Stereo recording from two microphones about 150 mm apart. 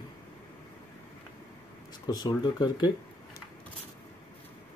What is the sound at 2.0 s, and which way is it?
Speech, 25° left (ahead or behind).